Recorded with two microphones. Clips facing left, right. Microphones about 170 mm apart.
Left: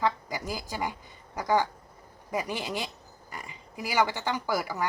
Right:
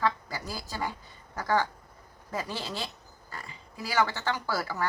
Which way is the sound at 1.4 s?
15° left (ahead or behind).